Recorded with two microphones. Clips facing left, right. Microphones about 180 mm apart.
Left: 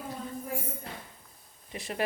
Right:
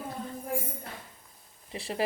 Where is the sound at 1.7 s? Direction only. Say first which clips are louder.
Right 2 dB; 30° right (ahead or behind).